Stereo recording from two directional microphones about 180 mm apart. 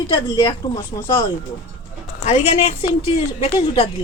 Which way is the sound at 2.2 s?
40° left (ahead or behind).